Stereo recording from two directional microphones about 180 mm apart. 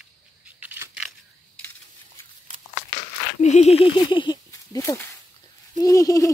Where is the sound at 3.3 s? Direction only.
40° left (ahead or behind); by 6.3 s 20° left (ahead or behind).